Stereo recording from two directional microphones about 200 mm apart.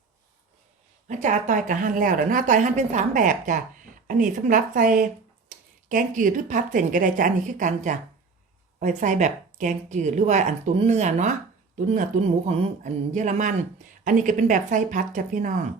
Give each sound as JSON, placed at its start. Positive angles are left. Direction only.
{"t": 1.0, "sound": "speech", "side_deg": -35}
{"t": 12.5, "sound": "speech", "side_deg": -35}